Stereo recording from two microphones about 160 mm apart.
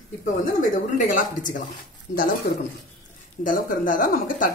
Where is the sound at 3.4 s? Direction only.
55° left (ahead or behind).